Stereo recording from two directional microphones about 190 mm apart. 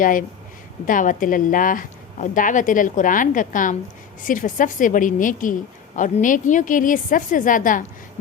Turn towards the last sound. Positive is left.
turn(degrees=45)  # may be behind; listen again after turning